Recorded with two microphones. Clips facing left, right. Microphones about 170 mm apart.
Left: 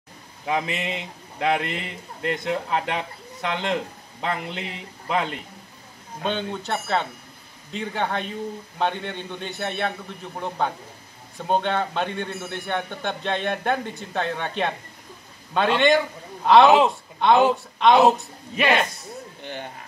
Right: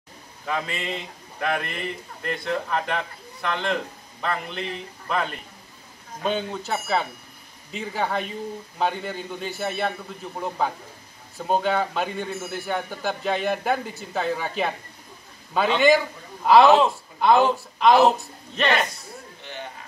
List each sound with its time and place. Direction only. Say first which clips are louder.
0.5 s a man's voice: left 3 dB; 20° left (ahead or behind)
6.2 s a man's voice: right 1 dB; 5° right (ahead or behind)